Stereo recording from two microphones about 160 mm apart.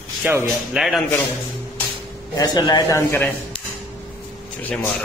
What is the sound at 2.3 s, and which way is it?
Speech, 25° left (ahead or behind).